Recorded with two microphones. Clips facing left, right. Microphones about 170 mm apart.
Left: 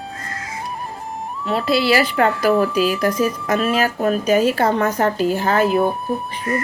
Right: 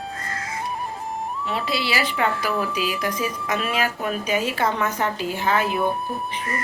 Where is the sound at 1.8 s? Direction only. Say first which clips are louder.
Left 6 dB; 50° left (ahead or behind).